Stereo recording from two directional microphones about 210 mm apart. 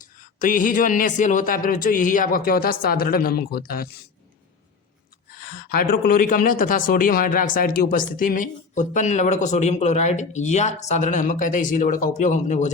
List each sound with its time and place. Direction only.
0.0 s speech: 40° left (ahead or behind)
5.3 s speech: 45° left (ahead or behind)